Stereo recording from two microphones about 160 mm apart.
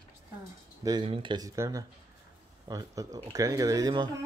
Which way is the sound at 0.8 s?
30° right (ahead or behind).